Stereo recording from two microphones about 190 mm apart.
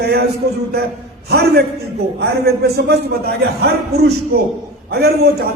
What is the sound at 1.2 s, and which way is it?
A man's voice, 55° right (ahead or behind).